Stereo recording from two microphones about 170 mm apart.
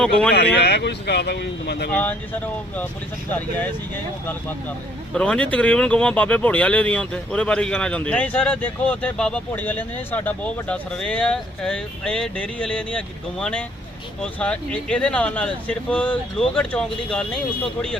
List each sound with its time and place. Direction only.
0.3 s speech: 75° left (ahead or behind)
1.9 s speech: 10° left (ahead or behind)
5.1 s speech: 5° left (ahead or behind)